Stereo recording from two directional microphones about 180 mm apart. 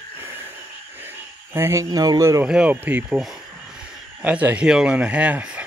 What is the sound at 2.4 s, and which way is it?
Speech, 5° right (ahead or behind).